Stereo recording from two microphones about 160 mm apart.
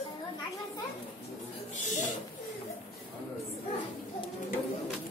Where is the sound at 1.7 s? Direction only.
50° left (ahead or behind).